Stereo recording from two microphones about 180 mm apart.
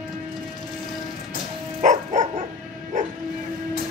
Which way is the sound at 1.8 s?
40° right (ahead or behind).